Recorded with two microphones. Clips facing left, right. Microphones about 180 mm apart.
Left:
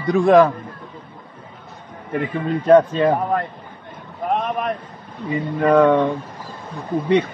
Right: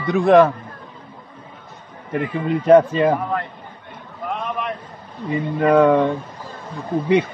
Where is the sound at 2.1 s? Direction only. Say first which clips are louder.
Right 1 dB; 5° right (ahead or behind).